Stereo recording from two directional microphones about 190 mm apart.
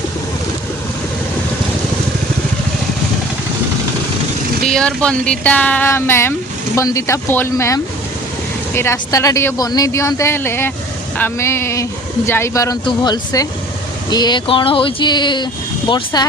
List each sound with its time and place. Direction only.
4.7 s speech: 5° left (ahead or behind); by 16.2 s 25° left (ahead or behind)